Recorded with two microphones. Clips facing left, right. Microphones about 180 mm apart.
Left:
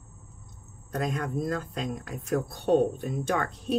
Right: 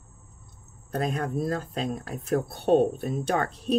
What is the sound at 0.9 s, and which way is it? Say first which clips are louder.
A woman's voice: right 2 dB; 35° right (ahead or behind).